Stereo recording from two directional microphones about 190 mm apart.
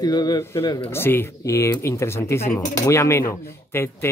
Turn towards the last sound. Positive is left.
turn(degrees=10)  # may be behind; listen again after turning